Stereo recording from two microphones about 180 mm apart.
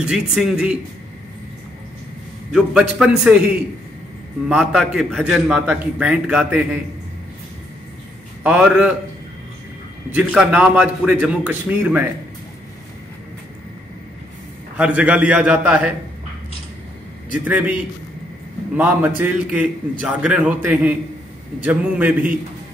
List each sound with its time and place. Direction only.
0.0 s a man's voice: 5° right (ahead or behind)
2.5 s a man's voice: 5° right (ahead or behind)
4.5 s a man's voice: 5° right (ahead or behind)
8.5 s a man's voice: 5° right (ahead or behind)
10.1 s a man's voice: 10° right (ahead or behind)
14.8 s a man's voice: 5° right (ahead or behind)
17.3 s a man's voice: 10° right (ahead or behind)
18.8 s a man's voice: 10° right (ahead or behind)